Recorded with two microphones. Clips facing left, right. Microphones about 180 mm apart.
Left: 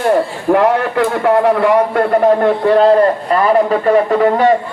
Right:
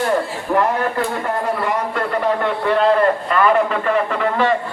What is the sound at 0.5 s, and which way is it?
A man's voice, 70° left (ahead or behind).